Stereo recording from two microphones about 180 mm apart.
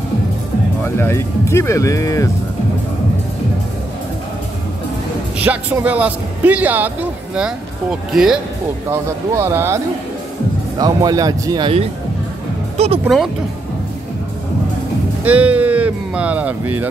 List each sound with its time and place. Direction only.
0.8 s speech: 15° left (ahead or behind)
5.4 s a man's voice: 10° right (ahead or behind)
8.9 s a man's voice: 15° right (ahead or behind)
10.8 s speech: 20° right (ahead or behind); by 13.0 s 35° right (ahead or behind)
15.2 s a man's voice: 10° right (ahead or behind)